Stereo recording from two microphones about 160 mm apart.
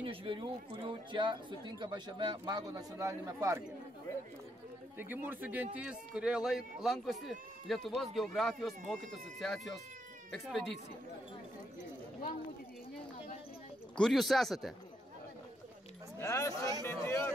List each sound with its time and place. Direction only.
0.0 s speech: 35° right (ahead or behind)
4.9 s speech: 10° right (ahead or behind)
13.9 s speech: 5° left (ahead or behind)
16.2 s speech: 20° left (ahead or behind)